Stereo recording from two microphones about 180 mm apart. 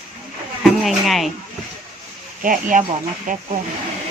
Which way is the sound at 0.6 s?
Centre (ahead or behind).